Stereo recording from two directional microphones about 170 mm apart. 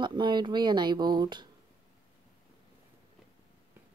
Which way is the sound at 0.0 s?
25° right (ahead or behind).